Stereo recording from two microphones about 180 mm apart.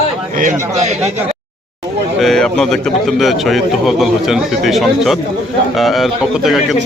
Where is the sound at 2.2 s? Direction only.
5° left (ahead or behind).